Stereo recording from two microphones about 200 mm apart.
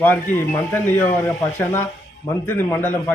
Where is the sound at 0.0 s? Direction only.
10° left (ahead or behind).